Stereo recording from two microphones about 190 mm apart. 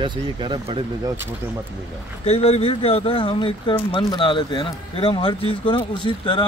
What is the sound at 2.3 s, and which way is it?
Speech, 30° left (ahead or behind).